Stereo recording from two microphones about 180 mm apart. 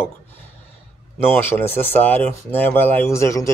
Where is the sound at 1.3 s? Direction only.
10° left (ahead or behind).